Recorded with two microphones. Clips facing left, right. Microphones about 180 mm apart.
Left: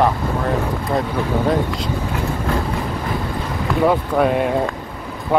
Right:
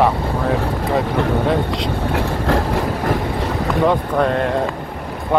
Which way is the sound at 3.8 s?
5° left (ahead or behind).